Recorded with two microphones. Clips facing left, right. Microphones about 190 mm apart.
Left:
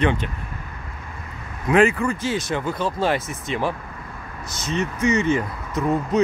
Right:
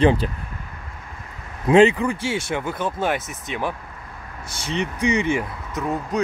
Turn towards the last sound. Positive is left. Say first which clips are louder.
# left 4 dB
turn(degrees=0)  # may be behind; listen again after turning